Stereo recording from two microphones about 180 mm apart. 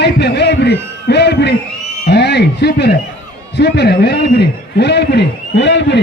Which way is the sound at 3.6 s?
70° left (ahead or behind).